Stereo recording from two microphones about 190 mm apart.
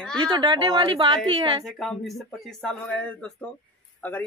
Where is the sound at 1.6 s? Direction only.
Centre (ahead or behind).